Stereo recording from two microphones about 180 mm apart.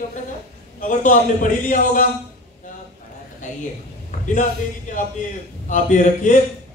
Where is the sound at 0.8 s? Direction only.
45° left (ahead or behind).